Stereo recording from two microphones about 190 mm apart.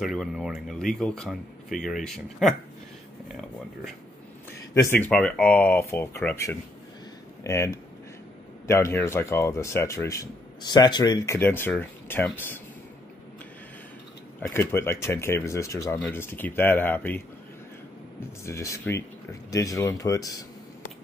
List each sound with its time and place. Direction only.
0.0 s speech: centre (ahead or behind)
4.7 s speech: 10° left (ahead or behind)
14.5 s speech: 10° left (ahead or behind)
18.4 s speech: 15° left (ahead or behind)